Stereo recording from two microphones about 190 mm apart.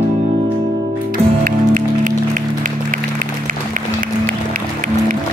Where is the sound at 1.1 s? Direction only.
45° right (ahead or behind).